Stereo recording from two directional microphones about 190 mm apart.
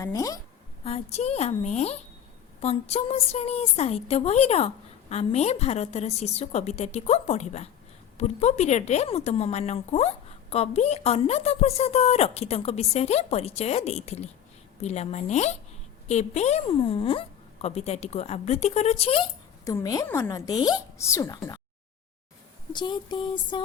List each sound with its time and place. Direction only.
0.0 s a woman's voice: 15° left (ahead or behind)
0.9 s a woman's voice: 35° left (ahead or behind)
19.6 s a woman's voice: 20° left (ahead or behind)
22.7 s a woman's voice: 25° left (ahead or behind)